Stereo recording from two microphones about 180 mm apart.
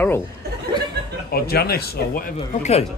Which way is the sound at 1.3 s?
60° left (ahead or behind).